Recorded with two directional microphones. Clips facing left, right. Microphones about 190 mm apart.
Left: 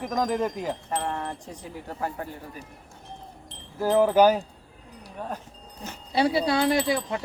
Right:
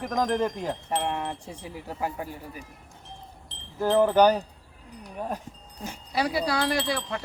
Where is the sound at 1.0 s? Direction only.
10° right (ahead or behind).